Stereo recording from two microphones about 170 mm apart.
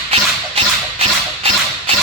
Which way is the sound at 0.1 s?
35° right (ahead or behind).